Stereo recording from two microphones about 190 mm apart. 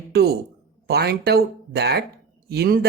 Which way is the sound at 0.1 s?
55° right (ahead or behind).